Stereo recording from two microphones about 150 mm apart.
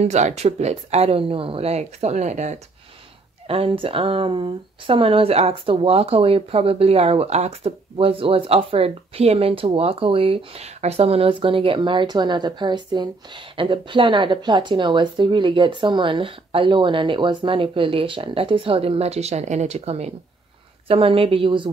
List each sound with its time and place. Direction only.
0.0 s speech: 45° right (ahead or behind)
3.4 s speech: 40° right (ahead or behind)